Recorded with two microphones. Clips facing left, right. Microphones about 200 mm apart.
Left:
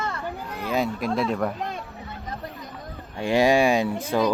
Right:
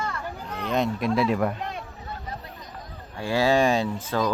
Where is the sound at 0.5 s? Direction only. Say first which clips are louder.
Right 1 dB; 5° left (ahead or behind).